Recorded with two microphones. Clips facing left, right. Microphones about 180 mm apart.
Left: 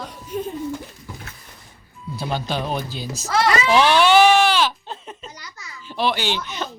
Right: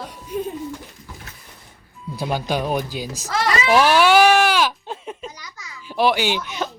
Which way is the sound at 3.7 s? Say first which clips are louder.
Right 1 dB; 5° right (ahead or behind).